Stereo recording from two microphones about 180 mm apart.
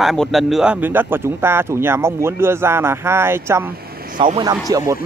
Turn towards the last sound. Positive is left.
turn(degrees=-20)  # may be behind; listen again after turning